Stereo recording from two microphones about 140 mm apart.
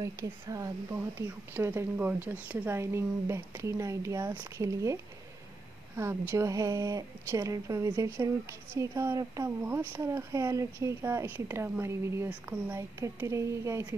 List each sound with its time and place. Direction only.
0.0 s a woman's voice: 25° right (ahead or behind)
5.9 s a woman's voice: 20° right (ahead or behind)